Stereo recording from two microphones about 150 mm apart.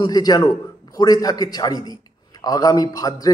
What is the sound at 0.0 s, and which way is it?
A man's voice, 25° left (ahead or behind).